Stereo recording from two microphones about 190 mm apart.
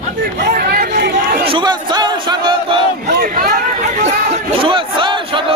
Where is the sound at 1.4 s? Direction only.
25° right (ahead or behind).